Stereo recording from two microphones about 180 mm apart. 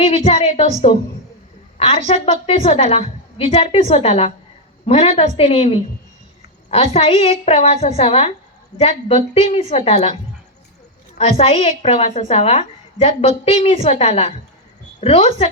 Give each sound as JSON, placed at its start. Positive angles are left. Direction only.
{"t": 0.0, "sound": "a woman's voice", "side_deg": 35}
{"t": 1.8, "sound": "a woman's voice", "side_deg": 35}
{"t": 6.9, "sound": "a woman's voice", "side_deg": 35}
{"t": 11.2, "sound": "a woman's voice", "side_deg": 35}